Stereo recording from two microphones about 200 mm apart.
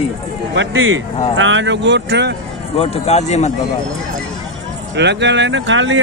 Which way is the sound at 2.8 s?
35° left (ahead or behind).